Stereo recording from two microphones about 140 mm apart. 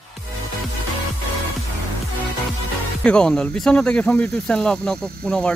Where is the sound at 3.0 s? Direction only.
5° left (ahead or behind).